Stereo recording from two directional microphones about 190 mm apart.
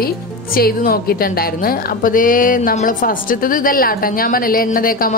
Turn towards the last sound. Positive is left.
turn(degrees=50)  # may be behind; listen again after turning